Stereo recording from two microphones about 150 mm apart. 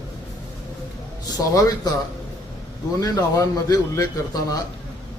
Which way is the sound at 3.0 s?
25° left (ahead or behind).